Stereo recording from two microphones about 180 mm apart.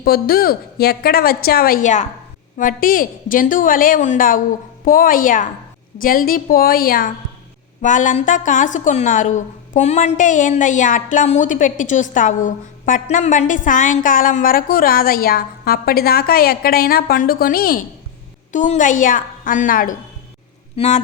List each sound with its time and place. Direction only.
0.0 s a woman's voice: 55° left (ahead or behind)
20.7 s speech: 35° left (ahead or behind)